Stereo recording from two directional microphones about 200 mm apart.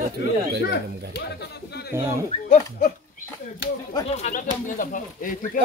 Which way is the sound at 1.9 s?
15° right (ahead or behind).